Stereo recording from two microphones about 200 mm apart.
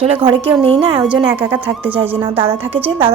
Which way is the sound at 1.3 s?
10° right (ahead or behind).